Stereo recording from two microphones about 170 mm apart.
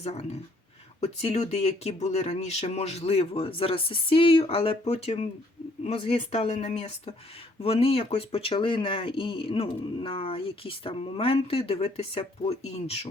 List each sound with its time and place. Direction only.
0.0 s speech: 40° left (ahead or behind)